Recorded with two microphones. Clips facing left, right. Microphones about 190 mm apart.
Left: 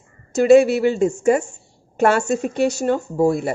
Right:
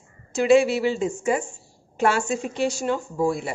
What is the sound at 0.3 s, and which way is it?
Speech, 40° left (ahead or behind).